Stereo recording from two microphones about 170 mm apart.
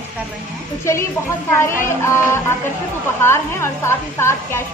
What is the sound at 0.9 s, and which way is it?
A woman's voice, 15° left (ahead or behind).